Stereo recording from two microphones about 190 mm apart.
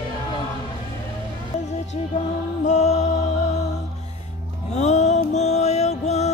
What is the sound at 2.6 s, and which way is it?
Music, 35° left (ahead or behind).